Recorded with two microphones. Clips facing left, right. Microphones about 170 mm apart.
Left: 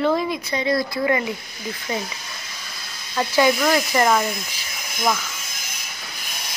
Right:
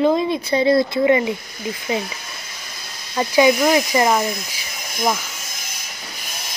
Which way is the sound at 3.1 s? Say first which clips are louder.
Right 3 dB; 15° right (ahead or behind).